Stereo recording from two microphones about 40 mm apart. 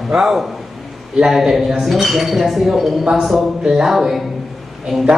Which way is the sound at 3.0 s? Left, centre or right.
Centre.